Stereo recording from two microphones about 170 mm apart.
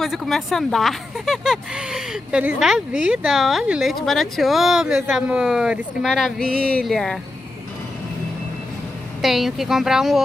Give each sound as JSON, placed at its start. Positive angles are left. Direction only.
{"t": 0.0, "sound": "speech", "side_deg": 0}
{"t": 6.5, "sound": "a sound", "side_deg": -60}
{"t": 6.8, "sound": "speech", "side_deg": 5}
{"t": 9.2, "sound": "speech", "side_deg": 0}